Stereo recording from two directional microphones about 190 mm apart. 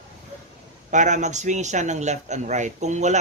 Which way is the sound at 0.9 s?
40° right (ahead or behind).